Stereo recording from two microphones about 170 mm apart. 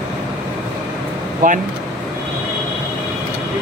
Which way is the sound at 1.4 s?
50° right (ahead or behind).